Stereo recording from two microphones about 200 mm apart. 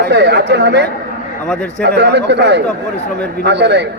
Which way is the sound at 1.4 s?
5° left (ahead or behind).